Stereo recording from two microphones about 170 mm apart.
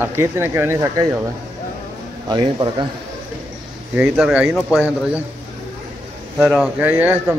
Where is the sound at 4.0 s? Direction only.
5° right (ahead or behind).